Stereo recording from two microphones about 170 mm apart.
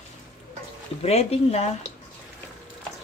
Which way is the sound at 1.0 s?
35° left (ahead or behind).